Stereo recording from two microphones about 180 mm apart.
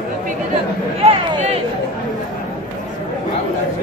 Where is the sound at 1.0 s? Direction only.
30° right (ahead or behind).